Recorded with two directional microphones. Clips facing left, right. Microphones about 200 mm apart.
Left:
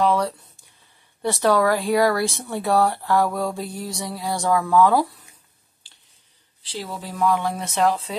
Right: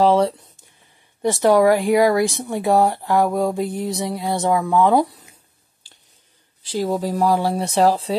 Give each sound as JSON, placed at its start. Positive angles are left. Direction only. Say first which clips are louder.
{"t": 0.0, "sound": "speech", "louder": "right 5 dB", "side_deg": -25}
{"t": 6.6, "sound": "speech", "louder": "right 11 dB", "side_deg": -45}